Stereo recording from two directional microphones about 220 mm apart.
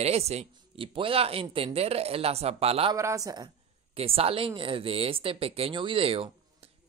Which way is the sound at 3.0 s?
15° right (ahead or behind).